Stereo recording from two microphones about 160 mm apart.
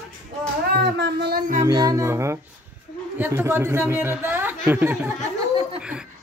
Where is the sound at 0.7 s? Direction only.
90° right.